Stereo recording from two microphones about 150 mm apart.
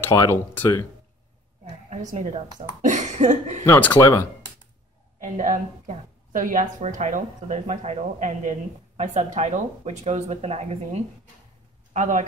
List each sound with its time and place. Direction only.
0.0 s speech: 15° left (ahead or behind)
2.1 s a woman's voice: 55° right (ahead or behind)
3.6 s speech: 15° left (ahead or behind)
5.2 s a woman's voice: 55° right (ahead or behind)